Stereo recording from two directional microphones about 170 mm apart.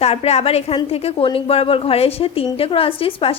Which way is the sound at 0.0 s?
35° left (ahead or behind).